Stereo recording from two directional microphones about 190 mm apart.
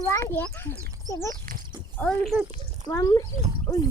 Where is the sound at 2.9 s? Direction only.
15° left (ahead or behind).